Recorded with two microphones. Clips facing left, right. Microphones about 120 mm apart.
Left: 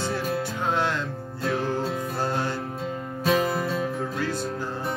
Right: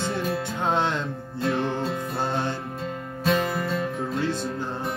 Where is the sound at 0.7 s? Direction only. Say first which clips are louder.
Right 2 dB; 20° right (ahead or behind).